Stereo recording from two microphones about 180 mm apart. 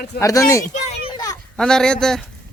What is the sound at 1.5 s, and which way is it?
Speech, 5° left (ahead or behind).